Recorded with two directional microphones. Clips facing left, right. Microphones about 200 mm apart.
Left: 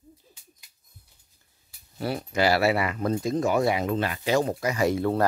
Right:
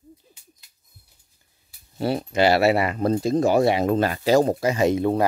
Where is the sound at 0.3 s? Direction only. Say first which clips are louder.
Right 1 dB; centre (ahead or behind).